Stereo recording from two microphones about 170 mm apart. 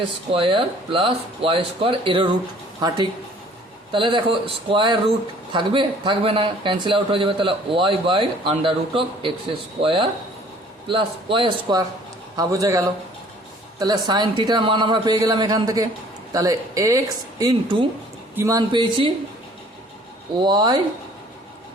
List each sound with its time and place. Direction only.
0.3 s speech: 30° right (ahead or behind)
3.9 s speech: 30° right (ahead or behind)
17.4 s speech: 30° right (ahead or behind)
20.3 s speech: 25° right (ahead or behind)